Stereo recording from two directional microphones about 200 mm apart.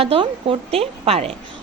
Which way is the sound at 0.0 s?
30° right (ahead or behind).